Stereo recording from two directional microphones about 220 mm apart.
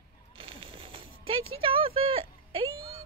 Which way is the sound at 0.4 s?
25° right (ahead or behind).